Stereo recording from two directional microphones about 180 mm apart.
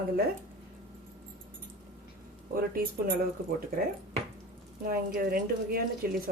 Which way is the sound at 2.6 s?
55° right (ahead or behind).